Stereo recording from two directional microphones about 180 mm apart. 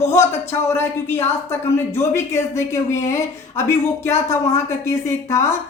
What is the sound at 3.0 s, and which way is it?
Speech, 40° left (ahead or behind).